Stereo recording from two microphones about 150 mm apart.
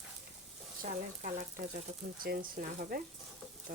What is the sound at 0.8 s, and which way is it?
Speech, 60° right (ahead or behind).